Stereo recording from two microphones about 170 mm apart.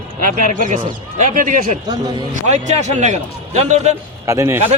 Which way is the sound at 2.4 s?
45° right (ahead or behind).